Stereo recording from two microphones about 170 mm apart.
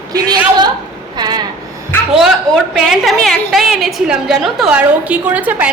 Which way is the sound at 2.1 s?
Centre (ahead or behind).